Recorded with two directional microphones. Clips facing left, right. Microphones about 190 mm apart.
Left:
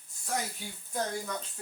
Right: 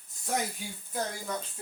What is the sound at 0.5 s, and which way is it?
Speech, 10° right (ahead or behind).